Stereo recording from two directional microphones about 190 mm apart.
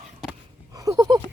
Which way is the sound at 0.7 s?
20° right (ahead or behind).